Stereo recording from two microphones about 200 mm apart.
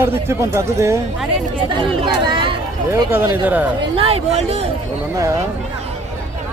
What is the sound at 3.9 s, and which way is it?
Speech, 30° right (ahead or behind).